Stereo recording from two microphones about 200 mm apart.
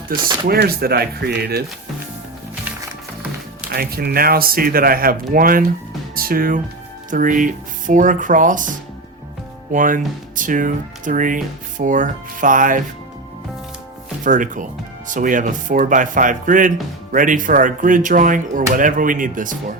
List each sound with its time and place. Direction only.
0.4 s speech: 50° right (ahead or behind)
3.7 s speech: 50° right (ahead or behind)
9.7 s speech: 40° right (ahead or behind)
14.3 s speech: 40° right (ahead or behind)